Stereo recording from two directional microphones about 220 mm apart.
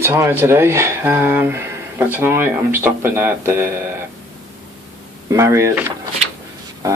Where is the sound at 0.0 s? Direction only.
10° right (ahead or behind).